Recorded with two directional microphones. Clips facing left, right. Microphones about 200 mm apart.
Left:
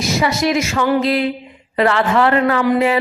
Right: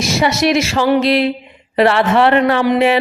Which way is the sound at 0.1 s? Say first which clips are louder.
Right 2 dB; 80° right.